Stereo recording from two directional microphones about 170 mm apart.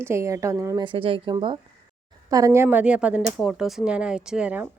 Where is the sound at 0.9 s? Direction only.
30° right (ahead or behind).